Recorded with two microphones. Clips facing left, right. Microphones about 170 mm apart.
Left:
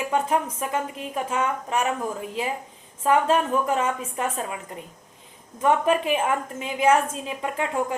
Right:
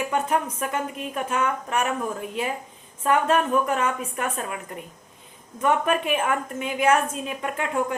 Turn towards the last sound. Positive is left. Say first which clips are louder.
# even
turn(degrees=25)  # may be behind; listen again after turning